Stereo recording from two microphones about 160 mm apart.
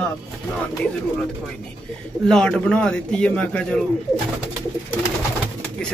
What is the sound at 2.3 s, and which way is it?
A man's voice, 5° left (ahead or behind).